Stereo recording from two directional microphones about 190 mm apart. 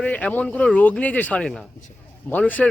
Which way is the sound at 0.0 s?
5° left (ahead or behind).